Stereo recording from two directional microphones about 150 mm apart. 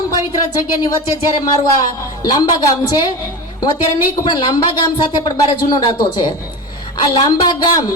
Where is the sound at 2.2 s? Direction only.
25° left (ahead or behind).